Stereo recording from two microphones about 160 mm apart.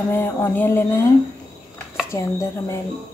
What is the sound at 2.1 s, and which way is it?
Speech, 20° left (ahead or behind).